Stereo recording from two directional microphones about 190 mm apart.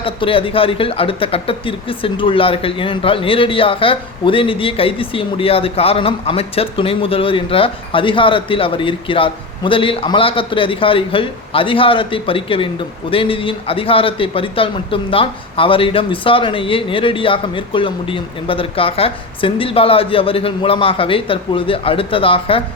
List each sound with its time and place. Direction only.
0.0 s speech: 30° left (ahead or behind)